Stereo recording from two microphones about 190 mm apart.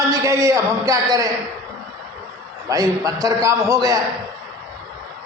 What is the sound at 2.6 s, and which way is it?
Speech, 20° right (ahead or behind).